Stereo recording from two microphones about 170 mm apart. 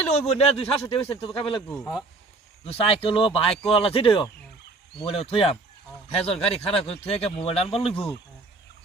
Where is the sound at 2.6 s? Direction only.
35° left (ahead or behind).